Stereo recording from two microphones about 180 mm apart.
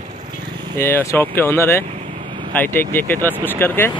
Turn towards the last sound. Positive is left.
turn(degrees=10)  # may be behind; listen again after turning